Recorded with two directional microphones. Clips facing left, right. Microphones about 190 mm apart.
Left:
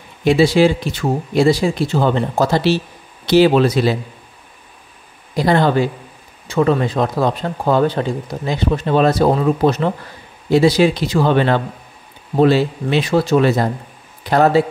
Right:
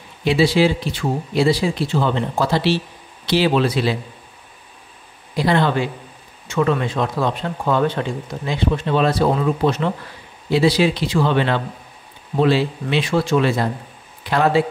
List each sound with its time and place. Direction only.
0.2 s speech: 45° left (ahead or behind)
5.3 s speech: 45° left (ahead or behind)